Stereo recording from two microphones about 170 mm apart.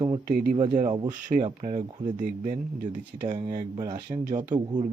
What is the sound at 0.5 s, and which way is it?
Speech, 30° right (ahead or behind).